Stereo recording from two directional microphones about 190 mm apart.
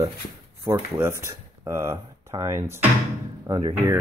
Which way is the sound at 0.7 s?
15° right (ahead or behind).